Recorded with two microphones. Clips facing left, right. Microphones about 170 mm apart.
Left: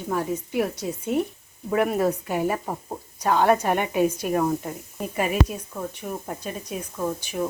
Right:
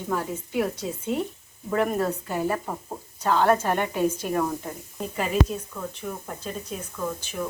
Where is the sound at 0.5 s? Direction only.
15° left (ahead or behind).